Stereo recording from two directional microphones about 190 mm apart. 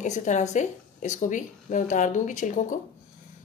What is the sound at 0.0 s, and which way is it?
Speech, 40° left (ahead or behind).